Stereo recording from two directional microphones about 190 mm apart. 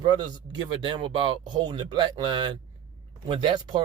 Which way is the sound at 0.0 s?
25° right (ahead or behind).